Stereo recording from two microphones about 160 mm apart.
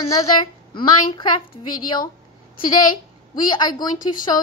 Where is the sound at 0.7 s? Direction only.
30° left (ahead or behind).